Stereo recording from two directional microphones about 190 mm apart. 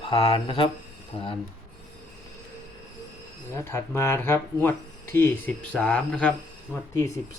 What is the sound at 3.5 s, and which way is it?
Speech, 15° left (ahead or behind).